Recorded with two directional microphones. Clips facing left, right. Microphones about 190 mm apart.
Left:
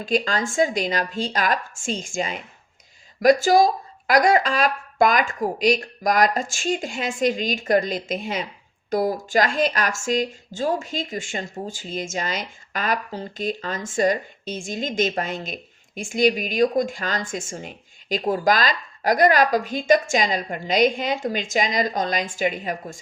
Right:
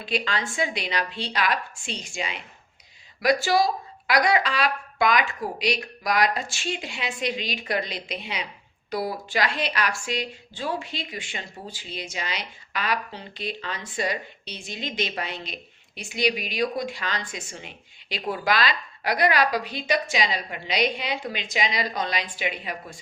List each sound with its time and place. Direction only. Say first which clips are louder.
0.0 s speech: left 5 dB; 45° left (ahead or behind)